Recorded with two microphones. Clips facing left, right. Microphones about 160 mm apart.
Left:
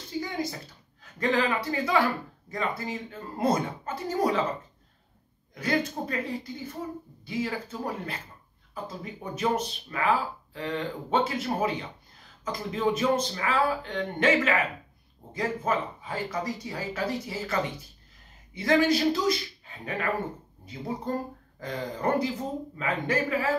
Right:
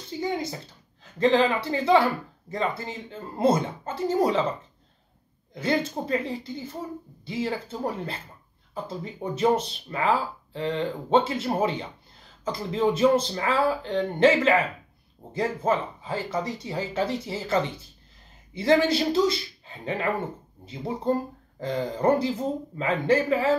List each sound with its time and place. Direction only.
0.2 s speech: 25° right (ahead or behind)
5.5 s speech: 25° right (ahead or behind)
7.2 s speech: 25° right (ahead or behind)